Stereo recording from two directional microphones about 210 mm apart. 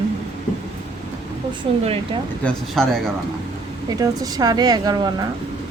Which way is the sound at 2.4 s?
Centre (ahead or behind).